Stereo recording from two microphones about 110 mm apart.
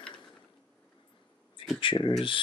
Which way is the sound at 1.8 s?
50° left (ahead or behind).